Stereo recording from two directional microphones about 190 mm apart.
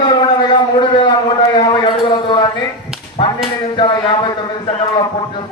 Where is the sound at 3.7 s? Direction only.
25° left (ahead or behind).